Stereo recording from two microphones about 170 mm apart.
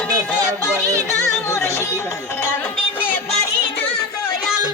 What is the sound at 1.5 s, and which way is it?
Music, 15° left (ahead or behind).